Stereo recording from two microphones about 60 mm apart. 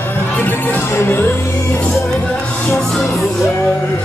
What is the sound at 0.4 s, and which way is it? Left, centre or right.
Music, left.